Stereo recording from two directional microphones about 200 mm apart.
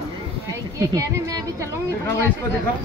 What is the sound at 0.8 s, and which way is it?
Speech, 15° right (ahead or behind).